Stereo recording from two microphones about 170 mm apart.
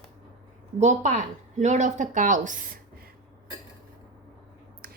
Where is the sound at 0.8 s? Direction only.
45° right (ahead or behind).